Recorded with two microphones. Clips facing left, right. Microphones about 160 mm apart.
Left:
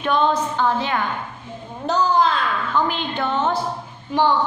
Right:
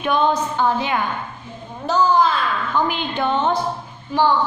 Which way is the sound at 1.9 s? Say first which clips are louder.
Right 2 dB; 20° left (ahead or behind).